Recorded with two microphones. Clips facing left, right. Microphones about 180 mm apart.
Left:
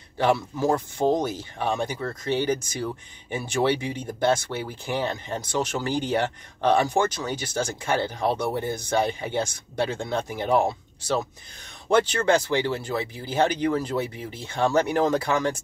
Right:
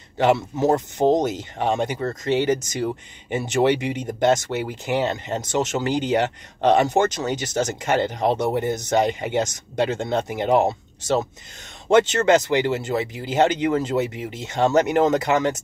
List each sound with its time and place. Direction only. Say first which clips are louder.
0.2 s speech: right 4 dB; 20° right (ahead or behind)